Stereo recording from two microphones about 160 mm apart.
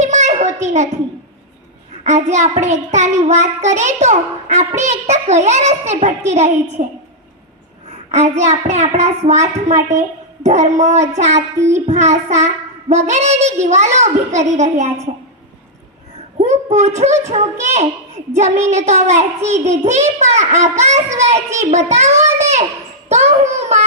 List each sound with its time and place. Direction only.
0.0 s a sound: 45° right (ahead or behind)
2.0 s child singing: 45° right (ahead or behind)
7.9 s child singing: 45° right (ahead or behind)
16.4 s child singing: 45° right (ahead or behind)
23.0 s a child's voice: 45° right (ahead or behind)